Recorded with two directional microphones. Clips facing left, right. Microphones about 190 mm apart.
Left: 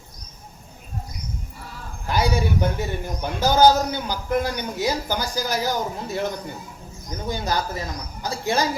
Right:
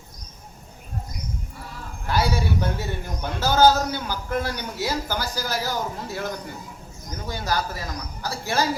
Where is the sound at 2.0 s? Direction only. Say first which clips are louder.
Left 2 dB; 15° left (ahead or behind).